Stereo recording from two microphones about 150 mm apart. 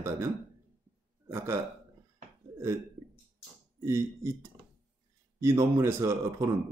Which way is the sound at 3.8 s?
20° right (ahead or behind).